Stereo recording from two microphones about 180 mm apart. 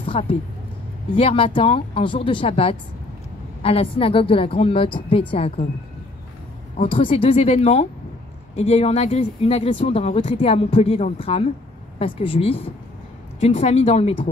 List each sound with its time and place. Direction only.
0.0 s speech: 30° left (ahead or behind)
6.8 s speech: 30° left (ahead or behind)